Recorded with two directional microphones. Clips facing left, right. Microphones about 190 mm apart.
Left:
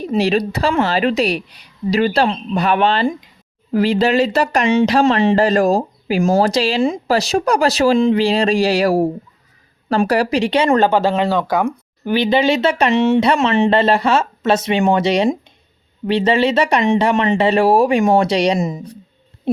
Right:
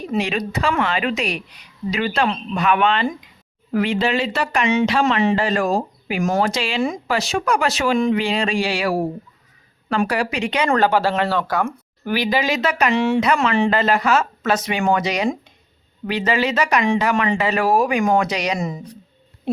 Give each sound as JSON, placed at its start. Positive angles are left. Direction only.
{"t": 0.0, "sound": "speech", "side_deg": 35}
{"t": 10.7, "sound": "speech", "side_deg": 20}